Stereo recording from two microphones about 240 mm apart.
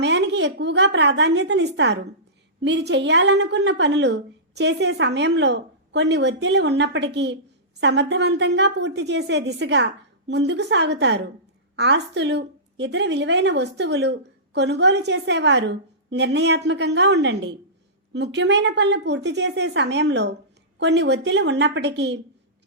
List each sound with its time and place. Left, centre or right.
0.0 s a woman's voice: right